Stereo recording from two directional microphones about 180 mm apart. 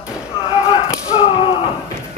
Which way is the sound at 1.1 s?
30° left (ahead or behind).